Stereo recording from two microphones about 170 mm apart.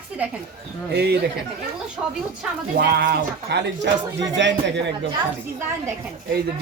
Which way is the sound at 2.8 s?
65° right (ahead or behind).